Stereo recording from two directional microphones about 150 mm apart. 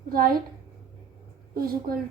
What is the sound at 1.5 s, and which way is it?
Speech, 85° right.